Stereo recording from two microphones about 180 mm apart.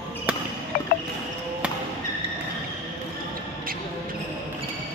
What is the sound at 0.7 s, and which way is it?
Music, 55° left (ahead or behind).